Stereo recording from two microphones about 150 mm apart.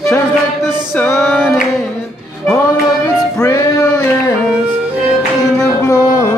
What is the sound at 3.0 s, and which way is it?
Music, 20° left (ahead or behind).